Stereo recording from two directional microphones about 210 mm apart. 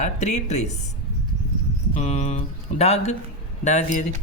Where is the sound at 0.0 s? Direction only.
35° left (ahead or behind).